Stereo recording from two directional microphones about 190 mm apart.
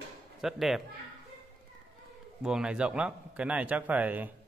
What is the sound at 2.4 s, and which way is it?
Speech, 5° right (ahead or behind).